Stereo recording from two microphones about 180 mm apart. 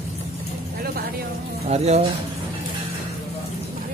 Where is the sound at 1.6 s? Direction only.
35° right (ahead or behind).